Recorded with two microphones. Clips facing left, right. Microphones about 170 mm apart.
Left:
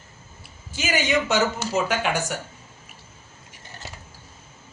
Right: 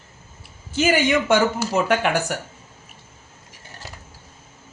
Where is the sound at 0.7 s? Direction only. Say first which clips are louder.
Right 5 dB; 55° right (ahead or behind).